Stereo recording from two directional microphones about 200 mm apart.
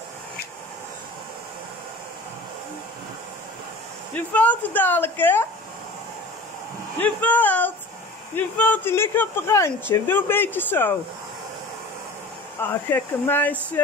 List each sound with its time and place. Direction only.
4.1 s speech: 5° left (ahead or behind)
7.0 s speech: 10° left (ahead or behind)
12.6 s speech: 10° left (ahead or behind)